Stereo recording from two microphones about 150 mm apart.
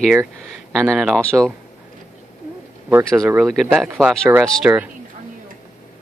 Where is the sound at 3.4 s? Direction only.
5° right (ahead or behind).